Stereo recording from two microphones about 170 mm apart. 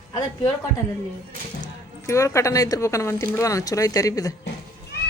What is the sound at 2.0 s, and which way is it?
A woman's voice, 20° left (ahead or behind).